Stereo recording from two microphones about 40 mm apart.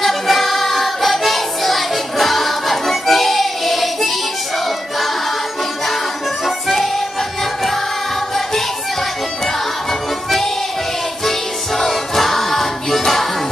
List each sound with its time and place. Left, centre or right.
0.0 s child singing: centre
6.4 s music: centre
11.2 s music: centre